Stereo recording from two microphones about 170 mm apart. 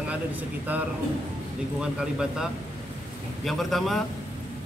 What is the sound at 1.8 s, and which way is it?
A man's voice, 5° right (ahead or behind).